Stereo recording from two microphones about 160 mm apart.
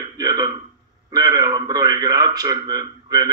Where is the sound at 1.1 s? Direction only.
25° right (ahead or behind).